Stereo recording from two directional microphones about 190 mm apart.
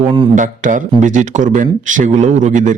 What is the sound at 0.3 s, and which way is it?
Speech, 40° right (ahead or behind).